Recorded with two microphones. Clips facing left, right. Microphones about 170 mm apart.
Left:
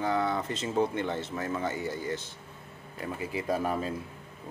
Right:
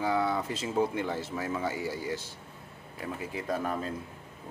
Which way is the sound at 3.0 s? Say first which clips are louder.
Left 2 dB; centre (ahead or behind).